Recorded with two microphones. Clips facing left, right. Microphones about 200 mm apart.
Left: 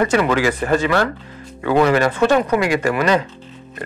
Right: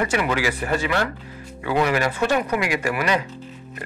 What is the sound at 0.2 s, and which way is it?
Speech, 40° left (ahead or behind).